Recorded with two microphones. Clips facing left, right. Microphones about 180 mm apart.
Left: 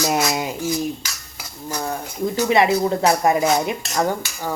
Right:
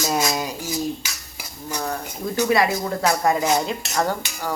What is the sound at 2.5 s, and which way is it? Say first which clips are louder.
Speech: left 5 dB; 25° left (ahead or behind).